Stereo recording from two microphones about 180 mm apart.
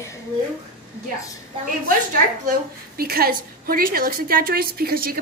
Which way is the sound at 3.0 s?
55° right (ahead or behind).